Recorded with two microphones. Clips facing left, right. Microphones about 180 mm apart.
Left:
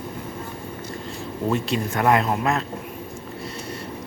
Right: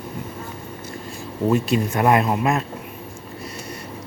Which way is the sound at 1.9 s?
20° right (ahead or behind).